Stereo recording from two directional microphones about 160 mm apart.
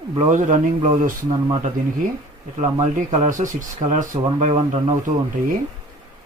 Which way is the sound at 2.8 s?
45° right (ahead or behind).